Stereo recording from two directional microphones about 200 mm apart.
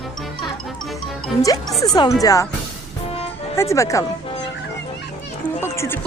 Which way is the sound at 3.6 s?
15° left (ahead or behind).